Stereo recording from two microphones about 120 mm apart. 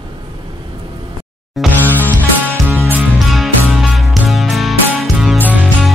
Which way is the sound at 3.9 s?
Centre (ahead or behind).